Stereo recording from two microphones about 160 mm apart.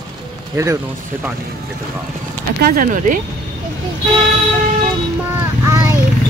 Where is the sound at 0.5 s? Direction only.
20° right (ahead or behind).